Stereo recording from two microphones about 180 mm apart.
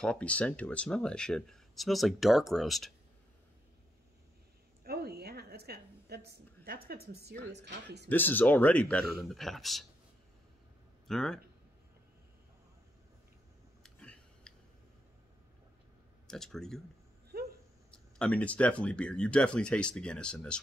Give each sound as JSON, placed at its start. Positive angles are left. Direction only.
{"t": 0.0, "sound": "speech", "side_deg": 5}
{"t": 4.8, "sound": "a sound", "side_deg": -60}
{"t": 7.5, "sound": "a man's voice", "side_deg": -70}
{"t": 8.1, "sound": "speech", "side_deg": 10}
{"t": 11.1, "sound": "speech", "side_deg": 5}
{"t": 13.8, "sound": "a sound", "side_deg": 5}
{"t": 16.3, "sound": "speech", "side_deg": 0}
{"t": 17.3, "sound": "a sound", "side_deg": -60}
{"t": 17.9, "sound": "speech", "side_deg": 5}